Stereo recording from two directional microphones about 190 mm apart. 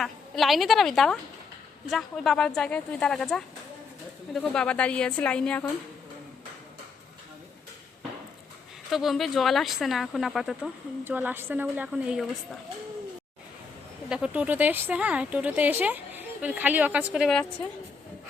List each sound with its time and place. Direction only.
0.0 s speech: centre (ahead or behind)
8.9 s speech: centre (ahead or behind)
14.1 s speech: 5° right (ahead or behind)